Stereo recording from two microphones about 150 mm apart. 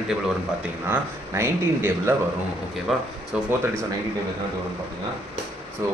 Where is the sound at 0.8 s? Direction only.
15° right (ahead or behind).